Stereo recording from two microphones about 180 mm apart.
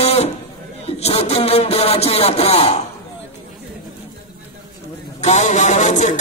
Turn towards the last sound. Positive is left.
turn(degrees=40)  # may be behind; listen again after turning